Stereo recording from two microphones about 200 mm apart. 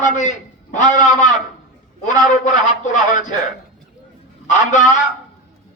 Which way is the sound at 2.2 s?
40° left (ahead or behind).